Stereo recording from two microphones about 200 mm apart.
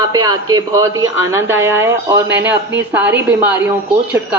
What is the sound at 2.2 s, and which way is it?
Speech, 60° right (ahead or behind).